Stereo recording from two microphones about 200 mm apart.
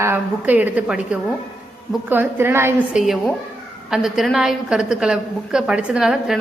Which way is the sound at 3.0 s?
Centre (ahead or behind).